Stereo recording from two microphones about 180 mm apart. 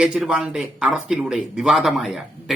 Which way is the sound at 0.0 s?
5° right (ahead or behind).